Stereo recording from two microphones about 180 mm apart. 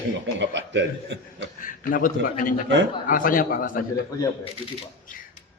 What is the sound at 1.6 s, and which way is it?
A man's voice, 50° left (ahead or behind).